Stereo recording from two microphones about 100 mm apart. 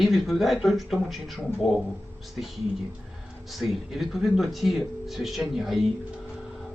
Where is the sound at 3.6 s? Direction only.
Centre (ahead or behind).